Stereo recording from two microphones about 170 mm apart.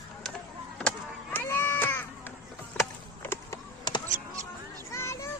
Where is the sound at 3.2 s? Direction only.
15° left (ahead or behind).